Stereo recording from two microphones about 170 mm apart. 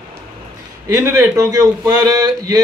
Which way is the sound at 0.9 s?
15° right (ahead or behind).